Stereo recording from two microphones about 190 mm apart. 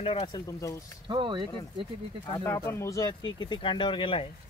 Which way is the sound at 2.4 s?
15° left (ahead or behind).